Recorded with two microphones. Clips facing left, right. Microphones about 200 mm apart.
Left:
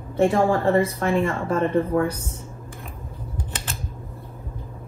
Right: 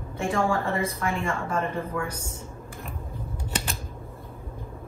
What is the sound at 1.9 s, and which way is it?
Speech, 50° left (ahead or behind).